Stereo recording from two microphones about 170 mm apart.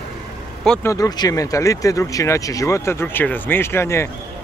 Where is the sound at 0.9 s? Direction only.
20° left (ahead or behind).